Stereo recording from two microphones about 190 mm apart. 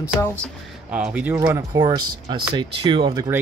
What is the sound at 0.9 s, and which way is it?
Speech, 5° right (ahead or behind).